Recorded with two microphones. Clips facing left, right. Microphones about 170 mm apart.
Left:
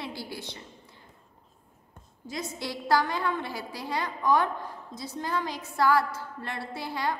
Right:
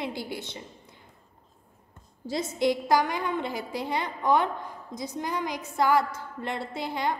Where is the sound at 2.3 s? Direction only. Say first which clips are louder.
Right 9 dB; 20° right (ahead or behind).